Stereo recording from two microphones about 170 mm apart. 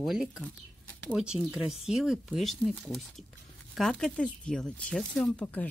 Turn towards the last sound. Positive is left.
turn(degrees=5)  # may be behind; listen again after turning